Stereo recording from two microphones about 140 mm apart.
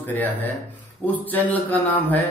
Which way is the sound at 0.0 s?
10° left (ahead or behind).